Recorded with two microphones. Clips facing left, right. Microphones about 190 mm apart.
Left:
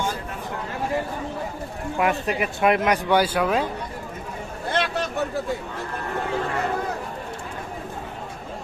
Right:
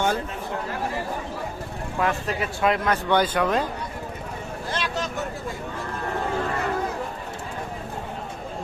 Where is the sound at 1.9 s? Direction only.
15° left (ahead or behind).